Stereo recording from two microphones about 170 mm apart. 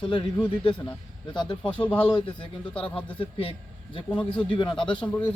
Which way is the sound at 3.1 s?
35° left (ahead or behind).